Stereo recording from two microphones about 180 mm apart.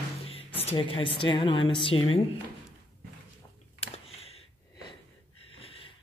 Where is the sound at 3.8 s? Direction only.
35° left (ahead or behind).